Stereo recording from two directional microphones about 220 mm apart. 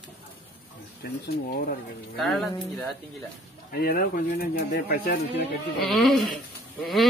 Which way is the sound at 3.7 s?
45° left (ahead or behind).